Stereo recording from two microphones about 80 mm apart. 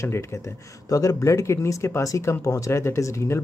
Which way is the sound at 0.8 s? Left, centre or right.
Left.